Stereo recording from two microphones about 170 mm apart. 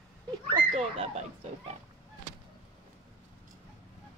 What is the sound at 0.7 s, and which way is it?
Speech, 35° right (ahead or behind).